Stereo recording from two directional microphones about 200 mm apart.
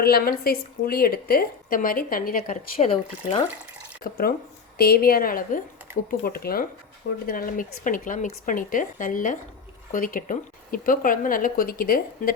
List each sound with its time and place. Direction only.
0.0 s speech: 50° left (ahead or behind)
2.7 s speech: 30° left (ahead or behind)
4.0 s speech: 45° left (ahead or behind)